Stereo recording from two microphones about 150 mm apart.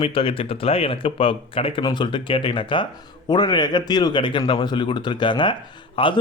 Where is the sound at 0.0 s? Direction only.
35° left (ahead or behind).